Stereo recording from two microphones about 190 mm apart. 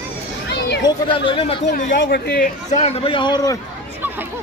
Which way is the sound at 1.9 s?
65° left (ahead or behind).